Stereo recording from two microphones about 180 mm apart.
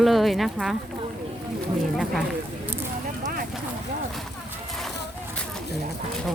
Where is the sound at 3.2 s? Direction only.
50° right (ahead or behind).